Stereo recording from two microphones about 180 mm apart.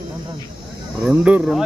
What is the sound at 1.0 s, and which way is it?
Speech, 5° right (ahead or behind).